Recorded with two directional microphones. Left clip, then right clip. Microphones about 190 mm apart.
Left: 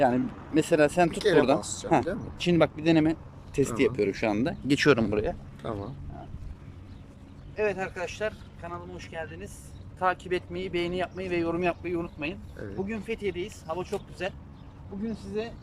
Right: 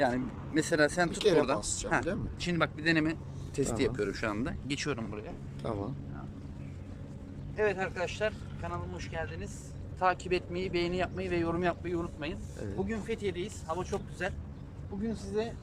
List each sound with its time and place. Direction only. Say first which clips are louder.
0.0 s speech: left 6 dB; 5° left (ahead or behind)
1.5 s speech: left 4 dB; 5° right (ahead or behind)
2.4 s speech: left 8 dB; 15° left (ahead or behind)
4.9 s speech: left 14 dB; 60° left (ahead or behind)
5.6 s speech: left 1 dB; 5° right (ahead or behind)
7.5 s speech: left 2 dB; centre (ahead or behind)